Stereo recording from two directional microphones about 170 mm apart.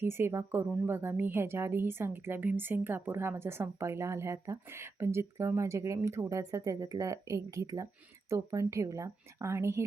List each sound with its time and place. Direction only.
0.0 s a woman's voice: 15° right (ahead or behind)